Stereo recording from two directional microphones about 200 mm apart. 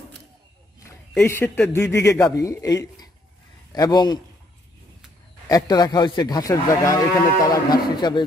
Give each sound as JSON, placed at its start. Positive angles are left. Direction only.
{"t": 1.1, "sound": "a man's voice", "side_deg": 10}
{"t": 5.5, "sound": "speech", "side_deg": 20}